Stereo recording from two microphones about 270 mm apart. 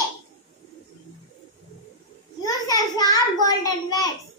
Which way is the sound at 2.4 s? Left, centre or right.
Centre.